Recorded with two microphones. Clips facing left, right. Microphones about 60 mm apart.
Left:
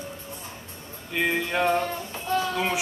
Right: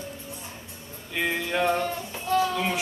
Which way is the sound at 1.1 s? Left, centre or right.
Centre.